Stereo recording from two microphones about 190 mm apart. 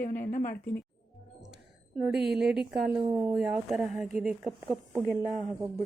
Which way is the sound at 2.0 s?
5° right (ahead or behind).